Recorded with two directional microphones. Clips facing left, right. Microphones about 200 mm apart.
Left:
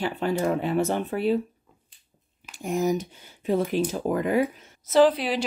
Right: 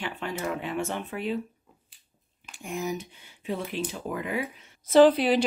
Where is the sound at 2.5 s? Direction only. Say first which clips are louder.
Left 7 dB; 40° left (ahead or behind).